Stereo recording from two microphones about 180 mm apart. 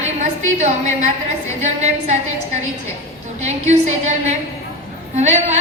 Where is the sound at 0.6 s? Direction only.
40° right (ahead or behind).